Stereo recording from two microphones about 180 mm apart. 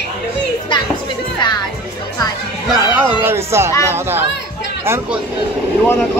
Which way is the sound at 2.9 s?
15° right (ahead or behind).